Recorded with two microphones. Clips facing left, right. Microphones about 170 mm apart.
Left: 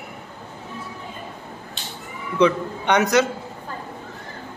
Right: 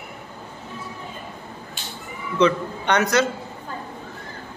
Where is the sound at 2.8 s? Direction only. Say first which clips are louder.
Left 2 dB; 15° left (ahead or behind).